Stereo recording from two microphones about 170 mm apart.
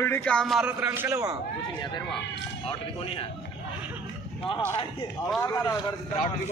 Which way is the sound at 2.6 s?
35° left (ahead or behind).